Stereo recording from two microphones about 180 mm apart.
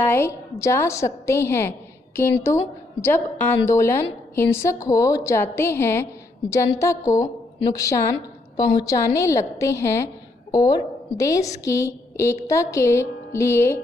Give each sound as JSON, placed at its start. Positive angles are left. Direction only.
{"t": 0.0, "sound": "a woman's voice", "side_deg": 15}